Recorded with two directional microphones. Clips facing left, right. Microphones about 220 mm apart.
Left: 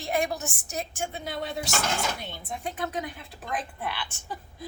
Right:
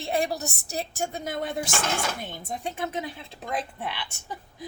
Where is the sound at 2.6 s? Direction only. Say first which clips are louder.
Even; 25° right (ahead or behind).